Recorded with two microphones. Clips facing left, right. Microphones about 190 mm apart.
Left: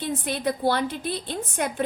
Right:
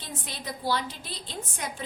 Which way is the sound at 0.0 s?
55° left (ahead or behind).